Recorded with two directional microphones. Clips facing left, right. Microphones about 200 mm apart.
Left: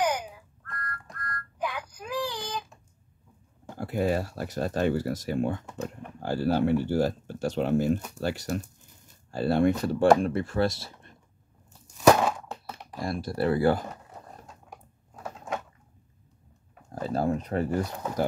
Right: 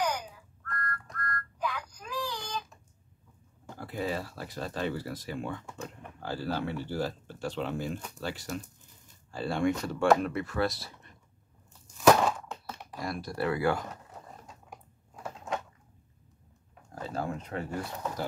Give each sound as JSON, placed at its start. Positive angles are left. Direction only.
{"t": 0.7, "sound": "child singing", "side_deg": 20}
{"t": 3.7, "sound": "speech", "side_deg": 50}
{"t": 6.3, "sound": "speech", "side_deg": 45}
{"t": 12.1, "sound": "a sound", "side_deg": 10}
{"t": 13.0, "sound": "speech", "side_deg": 30}
{"t": 15.1, "sound": "a sound", "side_deg": 10}
{"t": 16.9, "sound": "speech", "side_deg": 35}